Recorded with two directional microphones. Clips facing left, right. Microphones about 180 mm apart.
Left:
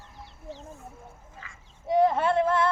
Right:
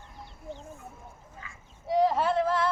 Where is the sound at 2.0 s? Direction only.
55° left (ahead or behind).